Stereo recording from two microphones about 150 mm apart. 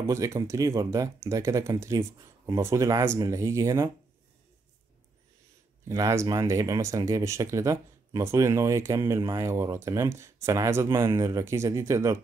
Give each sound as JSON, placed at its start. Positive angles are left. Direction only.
{"t": 0.0, "sound": "speech", "side_deg": -20}
{"t": 5.9, "sound": "speech", "side_deg": -20}